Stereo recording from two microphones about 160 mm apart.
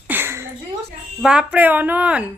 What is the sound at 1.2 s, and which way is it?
A woman's voice, 5° right (ahead or behind).